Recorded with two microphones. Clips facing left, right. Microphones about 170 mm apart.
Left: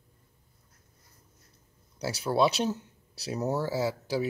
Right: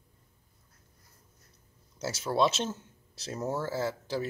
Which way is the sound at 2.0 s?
5° left (ahead or behind).